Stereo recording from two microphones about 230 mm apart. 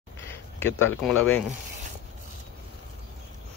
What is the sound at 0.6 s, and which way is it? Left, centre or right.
Speech, centre.